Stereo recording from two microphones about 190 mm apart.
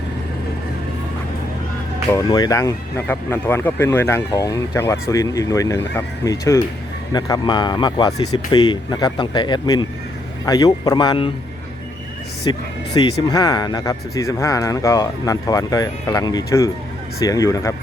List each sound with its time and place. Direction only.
2.1 s speech: 20° left (ahead or behind)
12.5 s speech: 20° left (ahead or behind)